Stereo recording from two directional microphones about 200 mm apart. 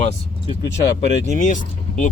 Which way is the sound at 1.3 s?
40° left (ahead or behind).